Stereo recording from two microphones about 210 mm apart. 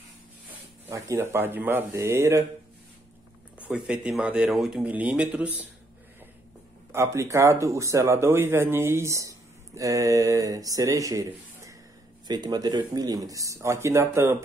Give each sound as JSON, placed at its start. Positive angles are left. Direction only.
{"t": 0.8, "sound": "speech", "side_deg": -15}
{"t": 3.6, "sound": "speech", "side_deg": -5}
{"t": 6.9, "sound": "speech", "side_deg": -15}